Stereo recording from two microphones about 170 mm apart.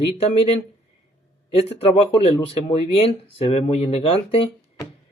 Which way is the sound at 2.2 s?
35° left (ahead or behind).